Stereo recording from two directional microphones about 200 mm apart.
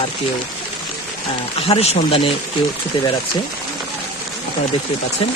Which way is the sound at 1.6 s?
30° left (ahead or behind).